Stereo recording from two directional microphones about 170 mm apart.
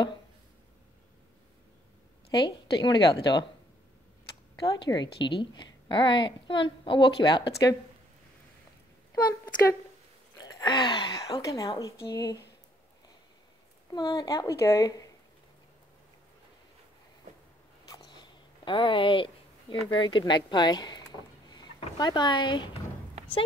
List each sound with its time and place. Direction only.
2.4 s a woman's voice: 25° left (ahead or behind)
4.6 s a woman's voice: 25° left (ahead or behind)
9.1 s a woman's voice: 15° left (ahead or behind)
13.9 s a woman's voice: 20° left (ahead or behind)
17.8 s speech: 25° left (ahead or behind)